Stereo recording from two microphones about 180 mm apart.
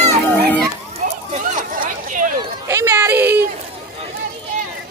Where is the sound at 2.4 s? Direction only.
15° right (ahead or behind).